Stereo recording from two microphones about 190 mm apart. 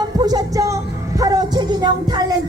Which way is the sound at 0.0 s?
20° right (ahead or behind).